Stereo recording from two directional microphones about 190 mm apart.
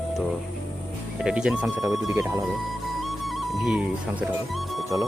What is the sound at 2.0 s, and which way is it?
Speech, 15° right (ahead or behind).